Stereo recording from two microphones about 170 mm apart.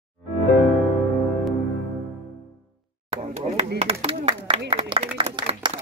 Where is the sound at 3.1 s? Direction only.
40° right (ahead or behind).